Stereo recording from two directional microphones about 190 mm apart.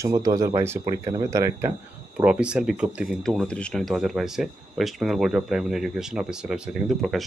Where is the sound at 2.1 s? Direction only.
5° right (ahead or behind).